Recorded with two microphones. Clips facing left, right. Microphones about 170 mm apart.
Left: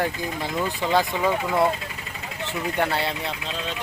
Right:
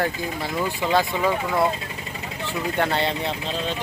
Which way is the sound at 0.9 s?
10° left (ahead or behind).